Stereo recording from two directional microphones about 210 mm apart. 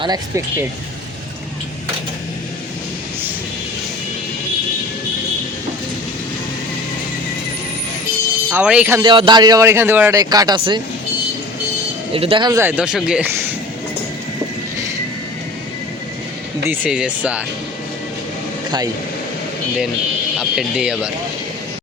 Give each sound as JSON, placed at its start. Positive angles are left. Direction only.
{"t": 0.0, "sound": "a man's voice", "side_deg": -15}
{"t": 8.4, "sound": "speech", "side_deg": -5}
{"t": 9.0, "sound": "a man's voice", "side_deg": -20}
{"t": 12.1, "sound": "a man's voice", "side_deg": -25}
{"t": 16.6, "sound": "speech", "side_deg": -10}
{"t": 20.4, "sound": "speech", "side_deg": 0}